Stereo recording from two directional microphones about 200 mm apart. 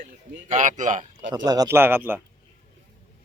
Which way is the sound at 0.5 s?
40° right (ahead or behind).